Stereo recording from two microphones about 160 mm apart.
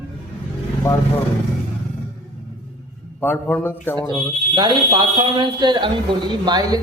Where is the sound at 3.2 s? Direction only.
10° left (ahead or behind).